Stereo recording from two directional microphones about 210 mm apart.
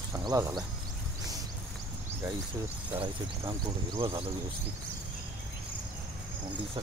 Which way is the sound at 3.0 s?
20° right (ahead or behind).